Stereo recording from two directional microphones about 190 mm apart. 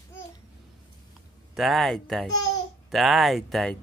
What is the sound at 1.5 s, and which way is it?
Speech, centre (ahead or behind).